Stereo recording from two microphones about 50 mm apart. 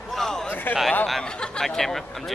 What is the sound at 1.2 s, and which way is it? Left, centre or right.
Speech, centre.